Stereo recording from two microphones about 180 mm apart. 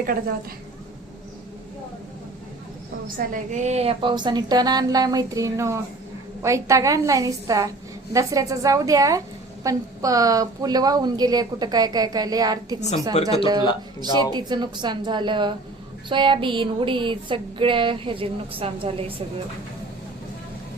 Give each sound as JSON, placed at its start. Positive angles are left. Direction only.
{"t": 3.2, "sound": "a woman's voice", "side_deg": -45}
{"t": 13.2, "sound": "speech", "side_deg": 35}
{"t": 14.0, "sound": "a woman's voice", "side_deg": -25}